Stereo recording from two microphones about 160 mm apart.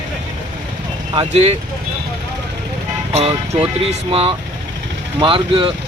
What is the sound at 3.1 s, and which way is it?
Speech, 40° right (ahead or behind).